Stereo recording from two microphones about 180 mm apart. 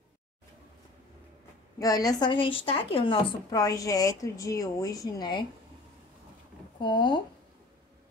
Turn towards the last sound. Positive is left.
turn(degrees=25)  # may be behind; listen again after turning